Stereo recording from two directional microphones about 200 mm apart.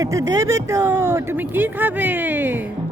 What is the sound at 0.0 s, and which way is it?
Speech, 15° right (ahead or behind).